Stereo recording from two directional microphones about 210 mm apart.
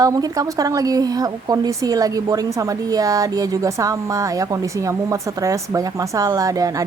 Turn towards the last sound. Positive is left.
turn(degrees=-15)  # may be behind; listen again after turning